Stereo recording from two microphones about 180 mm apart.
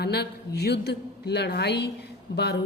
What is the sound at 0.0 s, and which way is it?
Speech, 65° left (ahead or behind).